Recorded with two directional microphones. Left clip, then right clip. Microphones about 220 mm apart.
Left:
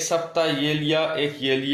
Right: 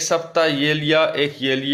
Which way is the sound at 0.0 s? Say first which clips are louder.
Right 4 dB; 30° right (ahead or behind).